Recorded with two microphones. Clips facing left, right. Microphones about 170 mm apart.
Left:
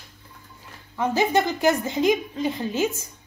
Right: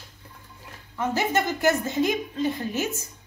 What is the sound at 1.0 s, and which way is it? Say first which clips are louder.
A woman's voice: left 3 dB; 15° left (ahead or behind).